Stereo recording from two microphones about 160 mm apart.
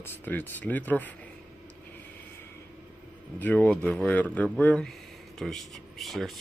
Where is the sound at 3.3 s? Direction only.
10° left (ahead or behind).